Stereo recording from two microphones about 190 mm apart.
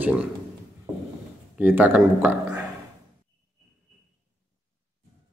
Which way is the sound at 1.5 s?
10° right (ahead or behind).